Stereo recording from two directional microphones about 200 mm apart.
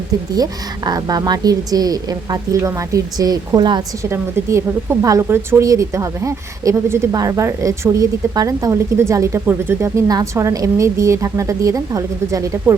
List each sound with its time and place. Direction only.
0.9 s a woman's voice: 20° right (ahead or behind)